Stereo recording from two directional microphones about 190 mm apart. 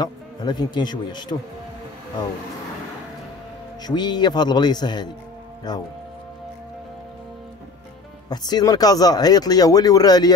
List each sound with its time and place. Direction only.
0.0 s speech: 20° left (ahead or behind)
3.8 s speech: 20° left (ahead or behind)
8.3 s speech: 20° left (ahead or behind)